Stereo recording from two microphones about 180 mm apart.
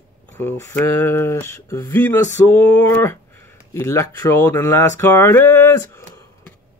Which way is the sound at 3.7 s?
15° left (ahead or behind).